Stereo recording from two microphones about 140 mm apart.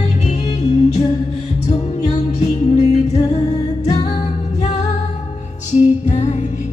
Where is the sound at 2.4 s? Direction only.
55° left (ahead or behind).